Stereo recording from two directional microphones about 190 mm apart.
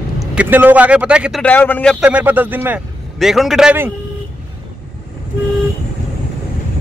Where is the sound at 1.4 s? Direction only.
10° left (ahead or behind).